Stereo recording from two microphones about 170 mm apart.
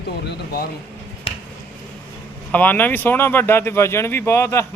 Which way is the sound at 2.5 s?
10° left (ahead or behind).